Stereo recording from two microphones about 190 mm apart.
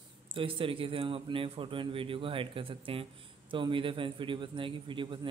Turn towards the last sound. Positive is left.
turn(degrees=-25)  # may be behind; listen again after turning